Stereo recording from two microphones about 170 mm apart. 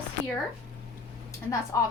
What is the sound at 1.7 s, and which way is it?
Speech, 20° left (ahead or behind).